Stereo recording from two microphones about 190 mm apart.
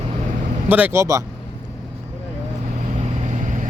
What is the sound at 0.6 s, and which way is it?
Speech, 10° right (ahead or behind).